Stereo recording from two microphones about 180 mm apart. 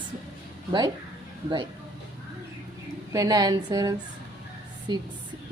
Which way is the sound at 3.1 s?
20° right (ahead or behind).